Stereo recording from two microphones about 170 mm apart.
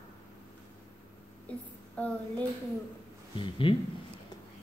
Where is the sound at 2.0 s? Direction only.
10° left (ahead or behind).